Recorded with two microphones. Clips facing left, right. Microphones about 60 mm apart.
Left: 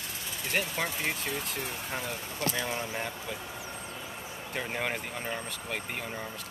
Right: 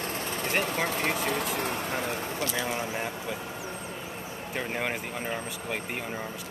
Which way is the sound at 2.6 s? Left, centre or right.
Centre.